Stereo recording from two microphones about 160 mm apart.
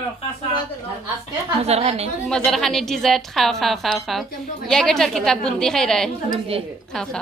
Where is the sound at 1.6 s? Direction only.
40° right (ahead or behind).